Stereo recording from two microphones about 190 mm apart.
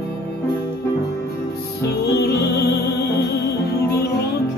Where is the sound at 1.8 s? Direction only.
60° left (ahead or behind).